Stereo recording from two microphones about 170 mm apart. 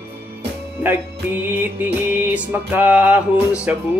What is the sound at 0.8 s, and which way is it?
Music, 10° right (ahead or behind).